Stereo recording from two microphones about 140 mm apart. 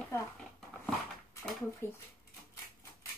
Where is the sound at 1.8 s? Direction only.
15° left (ahead or behind).